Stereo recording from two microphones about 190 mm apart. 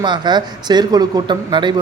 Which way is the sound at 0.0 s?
25° right (ahead or behind).